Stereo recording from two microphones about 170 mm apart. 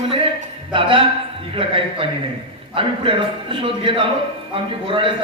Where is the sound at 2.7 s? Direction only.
30° right (ahead or behind).